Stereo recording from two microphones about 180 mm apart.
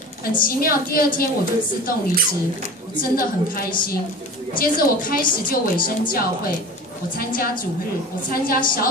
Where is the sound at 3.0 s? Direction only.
50° left (ahead or behind).